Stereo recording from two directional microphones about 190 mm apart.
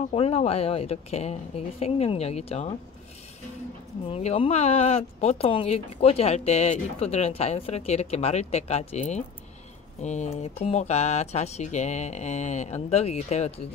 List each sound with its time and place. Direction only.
0.1 s speech: 30° left (ahead or behind)
4.1 s speech: 30° left (ahead or behind)